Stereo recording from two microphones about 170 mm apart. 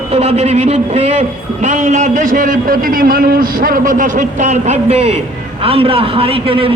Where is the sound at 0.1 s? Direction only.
40° right (ahead or behind).